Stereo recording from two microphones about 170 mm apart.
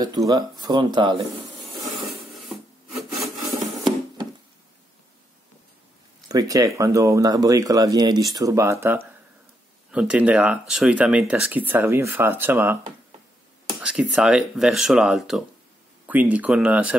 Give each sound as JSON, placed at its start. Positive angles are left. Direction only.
{"t": 0.3, "sound": "speech", "side_deg": -25}
{"t": 3.0, "sound": "rub", "side_deg": 0}
{"t": 6.2, "sound": "speech", "side_deg": -20}
{"t": 9.8, "sound": "speech", "side_deg": -5}
{"t": 13.7, "sound": "speech", "side_deg": -5}